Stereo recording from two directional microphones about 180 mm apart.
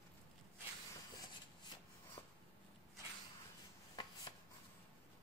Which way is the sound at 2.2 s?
25° left (ahead or behind).